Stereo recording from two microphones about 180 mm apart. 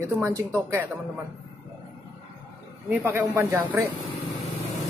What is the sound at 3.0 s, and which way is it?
Speech, 15° right (ahead or behind).